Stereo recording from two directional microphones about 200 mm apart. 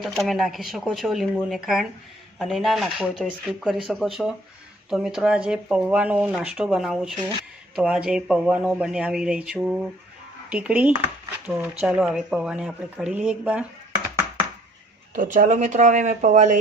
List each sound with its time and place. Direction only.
0.0 s speech: centre (ahead or behind)
15.1 s speech: 40° right (ahead or behind)